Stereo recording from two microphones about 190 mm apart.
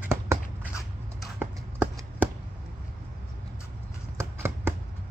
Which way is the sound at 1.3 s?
10° right (ahead or behind).